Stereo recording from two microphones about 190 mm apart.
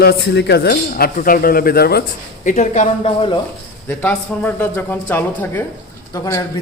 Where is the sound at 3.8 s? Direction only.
10° left (ahead or behind).